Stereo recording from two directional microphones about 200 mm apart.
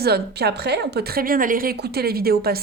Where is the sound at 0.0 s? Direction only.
55° right (ahead or behind).